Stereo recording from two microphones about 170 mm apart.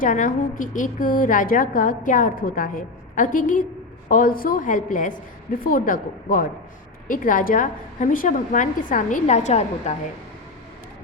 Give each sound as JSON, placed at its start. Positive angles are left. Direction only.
{"t": 0.0, "sound": "a woman's voice", "side_deg": 50}